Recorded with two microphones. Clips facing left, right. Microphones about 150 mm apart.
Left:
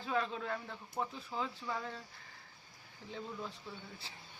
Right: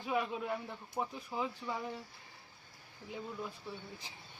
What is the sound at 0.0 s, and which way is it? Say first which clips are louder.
Speech: right 1 dB; 15° right (ahead or behind).